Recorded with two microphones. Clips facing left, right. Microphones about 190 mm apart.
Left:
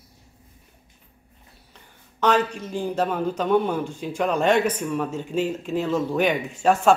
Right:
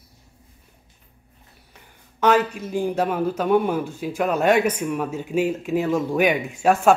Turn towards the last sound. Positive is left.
turn(degrees=-10)  # may be behind; listen again after turning